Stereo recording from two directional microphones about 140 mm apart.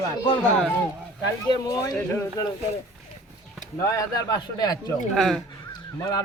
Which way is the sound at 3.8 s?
20° left (ahead or behind).